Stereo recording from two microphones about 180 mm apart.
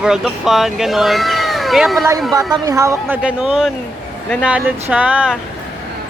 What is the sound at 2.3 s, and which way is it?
Speech, 20° right (ahead or behind).